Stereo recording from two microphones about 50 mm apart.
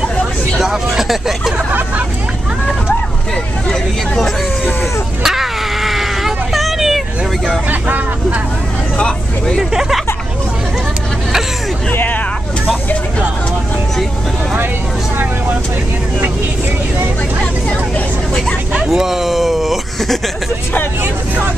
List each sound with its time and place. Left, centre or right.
0.9 s speech: centre
1.7 s speech: right
5.2 s a sound: centre
8.9 s speech: centre
9.6 s speech: centre
11.9 s speech: left
18.7 s speech: centre